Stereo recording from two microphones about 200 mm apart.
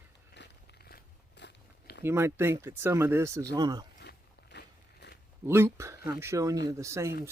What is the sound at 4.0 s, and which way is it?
Biting, 55° left (ahead or behind).